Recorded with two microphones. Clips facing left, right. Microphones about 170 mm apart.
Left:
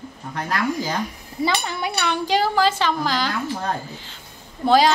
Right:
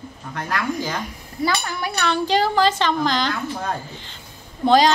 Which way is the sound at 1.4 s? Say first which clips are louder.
Even; 20° left (ahead or behind).